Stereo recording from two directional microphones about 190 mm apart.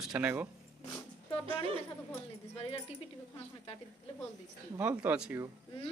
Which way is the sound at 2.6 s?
30° left (ahead or behind).